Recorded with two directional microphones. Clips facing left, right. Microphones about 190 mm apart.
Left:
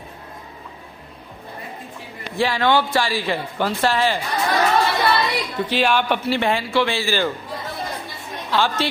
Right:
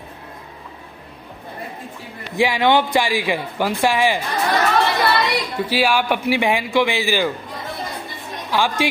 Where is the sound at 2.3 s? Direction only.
15° right (ahead or behind).